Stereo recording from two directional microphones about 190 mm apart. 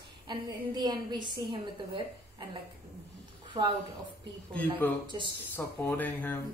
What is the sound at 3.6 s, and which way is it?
Speech, 20° right (ahead or behind).